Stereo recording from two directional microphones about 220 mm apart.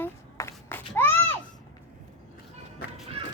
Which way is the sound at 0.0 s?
10° left (ahead or behind).